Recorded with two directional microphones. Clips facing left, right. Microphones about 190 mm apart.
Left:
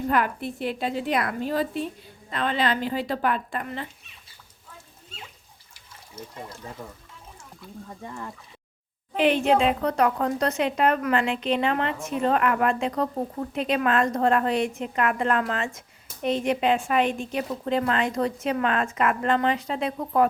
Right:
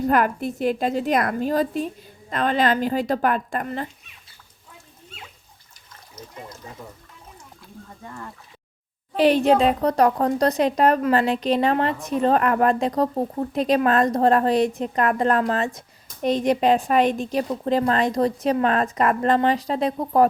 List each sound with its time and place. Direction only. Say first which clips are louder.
0.0 s a woman's voice: right 4 dB; 45° right (ahead or behind)
9.1 s speech: right 4 dB; 40° right (ahead or behind)